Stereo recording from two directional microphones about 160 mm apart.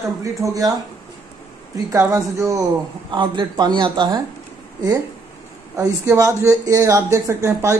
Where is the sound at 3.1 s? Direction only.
30° right (ahead or behind).